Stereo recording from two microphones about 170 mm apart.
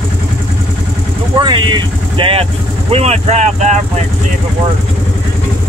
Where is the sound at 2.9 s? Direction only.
40° right (ahead or behind).